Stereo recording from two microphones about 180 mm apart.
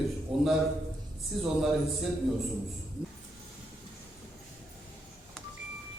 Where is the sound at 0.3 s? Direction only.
5° right (ahead or behind).